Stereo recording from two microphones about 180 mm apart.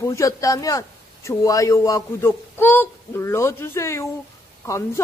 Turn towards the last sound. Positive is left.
turn(degrees=15)  # may be behind; listen again after turning